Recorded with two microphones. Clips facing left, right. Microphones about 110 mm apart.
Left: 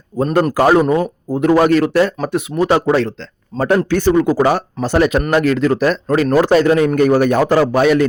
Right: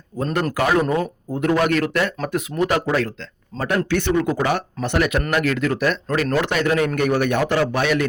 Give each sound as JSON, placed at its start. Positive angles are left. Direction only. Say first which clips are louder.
{"t": 0.5, "sound": "a man's voice", "louder": "left 6 dB", "side_deg": 35}
{"t": 3.5, "sound": "speech", "louder": "left 8 dB", "side_deg": 15}
{"t": 3.8, "sound": "a man's voice", "louder": "left 6 dB", "side_deg": 35}